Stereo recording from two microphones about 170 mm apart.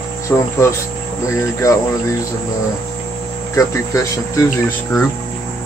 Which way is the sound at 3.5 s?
20° left (ahead or behind).